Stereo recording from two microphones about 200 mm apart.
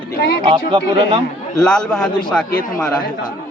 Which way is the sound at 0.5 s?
25° right (ahead or behind).